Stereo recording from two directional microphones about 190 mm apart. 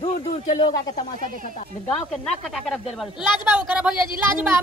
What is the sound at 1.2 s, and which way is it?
Speech, 45° right (ahead or behind).